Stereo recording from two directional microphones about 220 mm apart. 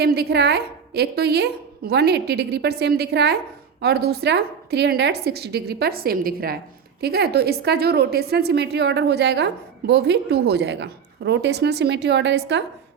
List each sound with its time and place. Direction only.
0.0 s a woman's voice: 45° right (ahead or behind)